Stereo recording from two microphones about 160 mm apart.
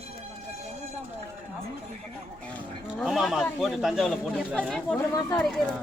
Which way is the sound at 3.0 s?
Centre (ahead or behind).